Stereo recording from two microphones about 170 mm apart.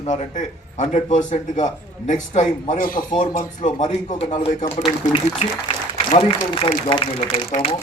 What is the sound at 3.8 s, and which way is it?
A man's voice, 40° left (ahead or behind).